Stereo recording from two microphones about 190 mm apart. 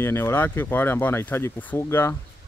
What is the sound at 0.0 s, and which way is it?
Speech, 15° left (ahead or behind).